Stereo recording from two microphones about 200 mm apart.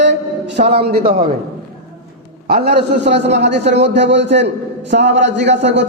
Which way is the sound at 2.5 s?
55° right (ahead or behind).